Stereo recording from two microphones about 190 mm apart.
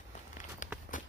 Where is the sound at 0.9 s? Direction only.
45° left (ahead or behind).